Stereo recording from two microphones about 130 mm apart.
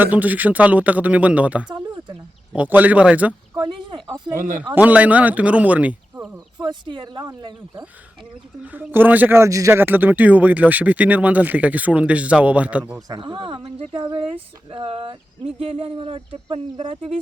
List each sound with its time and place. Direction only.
0.0 s speech: 10° right (ahead or behind)
3.5 s speech: 35° right (ahead or behind)
4.7 s speech: 10° right (ahead or behind)
6.6 s speech: 35° right (ahead or behind)
8.6 s speech: 10° right (ahead or behind)
13.1 s speech: 35° right (ahead or behind)